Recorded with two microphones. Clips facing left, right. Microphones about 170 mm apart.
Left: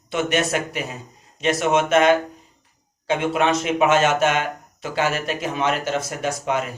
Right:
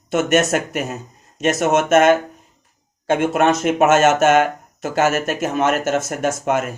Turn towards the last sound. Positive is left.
turn(degrees=-50)  # may be behind; listen again after turning